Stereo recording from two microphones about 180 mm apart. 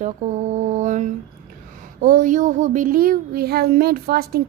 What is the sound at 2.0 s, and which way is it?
Child singing, 45° right (ahead or behind).